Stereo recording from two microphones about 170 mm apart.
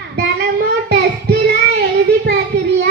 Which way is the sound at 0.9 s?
75° right (ahead or behind).